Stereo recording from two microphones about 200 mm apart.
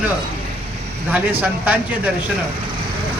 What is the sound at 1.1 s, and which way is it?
A man's voice, 10° right (ahead or behind).